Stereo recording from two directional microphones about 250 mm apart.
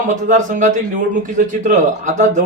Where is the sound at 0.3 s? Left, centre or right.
Right.